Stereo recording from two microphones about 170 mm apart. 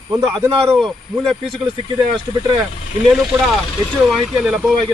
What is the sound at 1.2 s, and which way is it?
Speech, centre (ahead or behind).